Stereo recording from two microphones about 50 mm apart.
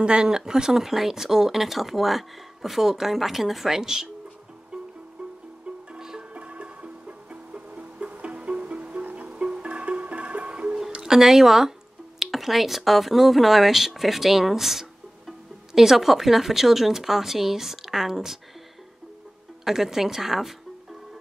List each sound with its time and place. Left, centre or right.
0.0 s speech: centre
5.9 s music: centre
6.3 s music: right; by 11.7 s centre
12.2 s speech: centre
19.6 s speech: centre